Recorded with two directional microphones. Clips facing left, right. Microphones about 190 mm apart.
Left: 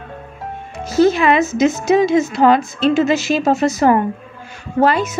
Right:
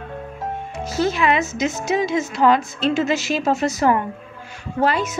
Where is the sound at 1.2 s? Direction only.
45° left (ahead or behind).